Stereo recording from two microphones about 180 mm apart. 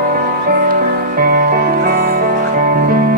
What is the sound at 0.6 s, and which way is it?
Music, 50° right (ahead or behind).